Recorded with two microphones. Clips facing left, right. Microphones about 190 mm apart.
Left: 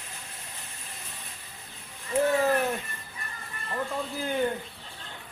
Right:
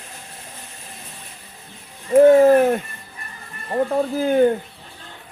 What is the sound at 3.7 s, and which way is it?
Speech, 55° right (ahead or behind).